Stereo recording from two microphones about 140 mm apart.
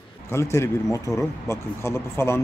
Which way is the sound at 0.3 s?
20° left (ahead or behind).